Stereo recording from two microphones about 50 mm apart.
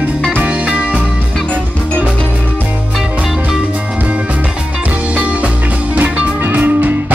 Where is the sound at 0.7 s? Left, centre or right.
Right.